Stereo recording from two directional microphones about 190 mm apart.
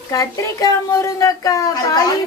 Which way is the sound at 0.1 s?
20° left (ahead or behind).